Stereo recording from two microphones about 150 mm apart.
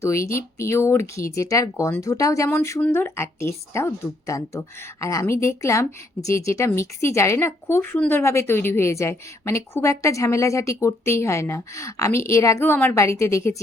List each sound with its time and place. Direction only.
0.0 s a woman's voice: 20° left (ahead or behind)